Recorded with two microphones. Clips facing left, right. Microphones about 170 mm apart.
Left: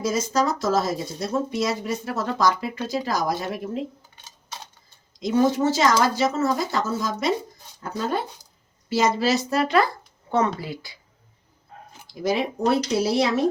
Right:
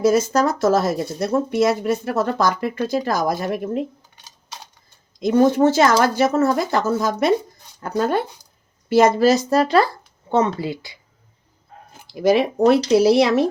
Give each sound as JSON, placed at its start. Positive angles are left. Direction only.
{"t": 0.0, "sound": "speech", "side_deg": -65}
{"t": 5.2, "sound": "speech", "side_deg": -55}
{"t": 12.0, "sound": "speech", "side_deg": -70}